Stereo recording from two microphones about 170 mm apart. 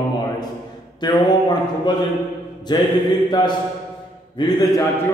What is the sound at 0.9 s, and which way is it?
Speech, 25° left (ahead or behind).